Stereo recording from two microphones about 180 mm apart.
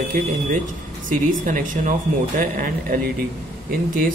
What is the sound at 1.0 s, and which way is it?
Speech, 50° right (ahead or behind).